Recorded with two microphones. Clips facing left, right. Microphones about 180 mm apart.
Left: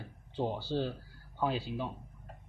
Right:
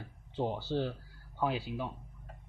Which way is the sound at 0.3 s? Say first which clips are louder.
Even; 20° right (ahead or behind).